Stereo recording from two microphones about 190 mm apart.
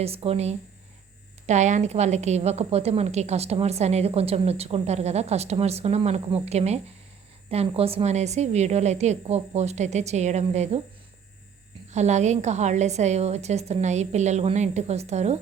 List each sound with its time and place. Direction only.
0.0 s a woman's voice: 30° right (ahead or behind)
11.9 s a woman's voice: 35° right (ahead or behind)